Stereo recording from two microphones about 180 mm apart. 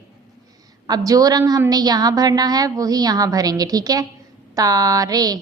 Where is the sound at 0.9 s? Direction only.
20° right (ahead or behind).